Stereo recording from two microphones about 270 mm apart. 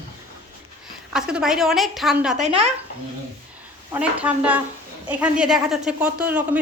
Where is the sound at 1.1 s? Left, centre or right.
Centre.